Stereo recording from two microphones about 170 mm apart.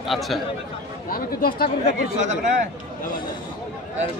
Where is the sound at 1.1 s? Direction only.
60° left (ahead or behind).